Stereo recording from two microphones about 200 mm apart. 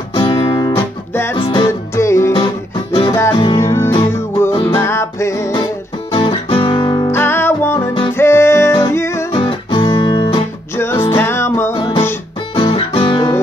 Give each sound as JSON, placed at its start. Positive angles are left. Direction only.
{"t": 0.1, "sound": "music", "side_deg": 20}
{"t": 2.3, "sound": "guitar", "side_deg": 30}
{"t": 3.5, "sound": "music", "side_deg": 15}
{"t": 6.1, "sound": "music", "side_deg": 25}
{"t": 9.3, "sound": "music", "side_deg": 25}
{"t": 10.8, "sound": "music", "side_deg": 10}
{"t": 11.7, "sound": "music", "side_deg": 30}